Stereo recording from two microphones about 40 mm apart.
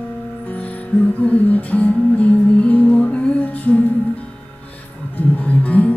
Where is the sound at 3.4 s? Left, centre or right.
Left.